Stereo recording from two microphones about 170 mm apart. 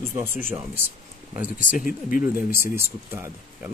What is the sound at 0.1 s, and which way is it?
Speech, 15° right (ahead or behind).